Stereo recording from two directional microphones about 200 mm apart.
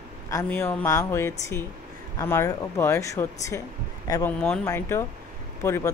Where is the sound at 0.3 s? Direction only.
15° left (ahead or behind).